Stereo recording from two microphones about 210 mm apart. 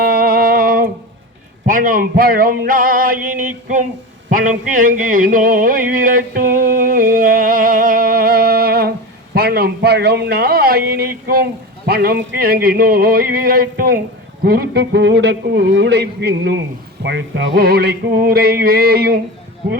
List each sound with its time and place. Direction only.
0.0 s music: 45° right (ahead or behind)
1.6 s male singing: 40° right (ahead or behind)
4.3 s a sound: 40° right (ahead or behind)
9.3 s a man's voice: 45° right (ahead or behind)
11.9 s music: 50° right (ahead or behind)
14.4 s a man's voice: 50° right (ahead or behind)
17.0 s music: 55° right (ahead or behind)